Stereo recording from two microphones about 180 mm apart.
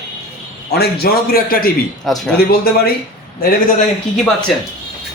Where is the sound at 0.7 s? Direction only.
60° left (ahead or behind).